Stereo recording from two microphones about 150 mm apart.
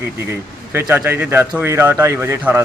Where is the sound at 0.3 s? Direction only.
15° right (ahead or behind).